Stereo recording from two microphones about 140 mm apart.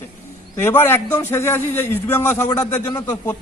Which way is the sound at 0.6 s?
15° left (ahead or behind).